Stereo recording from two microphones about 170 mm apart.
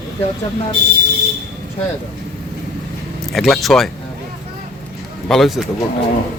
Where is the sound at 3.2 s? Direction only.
Centre (ahead or behind).